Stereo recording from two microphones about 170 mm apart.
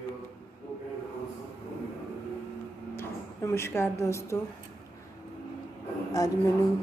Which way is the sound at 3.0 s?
15° left (ahead or behind).